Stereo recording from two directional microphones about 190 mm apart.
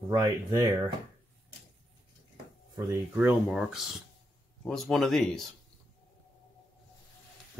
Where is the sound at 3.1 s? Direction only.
5° right (ahead or behind).